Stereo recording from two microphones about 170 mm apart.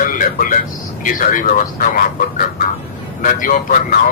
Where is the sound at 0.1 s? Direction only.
55° left (ahead or behind).